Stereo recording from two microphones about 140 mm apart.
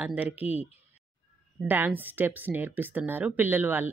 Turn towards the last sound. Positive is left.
turn(degrees=-15)  # may be behind; listen again after turning